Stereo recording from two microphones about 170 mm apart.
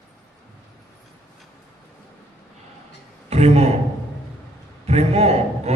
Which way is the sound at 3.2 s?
40° right (ahead or behind).